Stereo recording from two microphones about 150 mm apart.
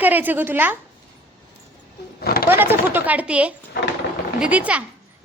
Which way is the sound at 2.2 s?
90° left.